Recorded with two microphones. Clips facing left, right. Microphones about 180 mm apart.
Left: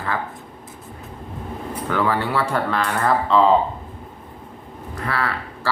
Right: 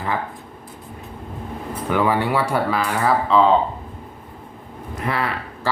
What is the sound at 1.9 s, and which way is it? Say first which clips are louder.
Speech: right 2 dB; 15° right (ahead or behind).